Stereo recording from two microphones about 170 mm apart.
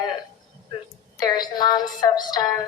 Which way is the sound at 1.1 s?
25° left (ahead or behind).